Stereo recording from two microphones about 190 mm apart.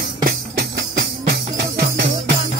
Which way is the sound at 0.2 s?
50° right (ahead or behind).